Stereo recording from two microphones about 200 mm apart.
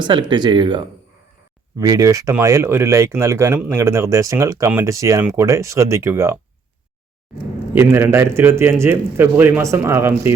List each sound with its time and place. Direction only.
0.0 s speech: 20° right (ahead or behind)
7.7 s speech: 10° right (ahead or behind)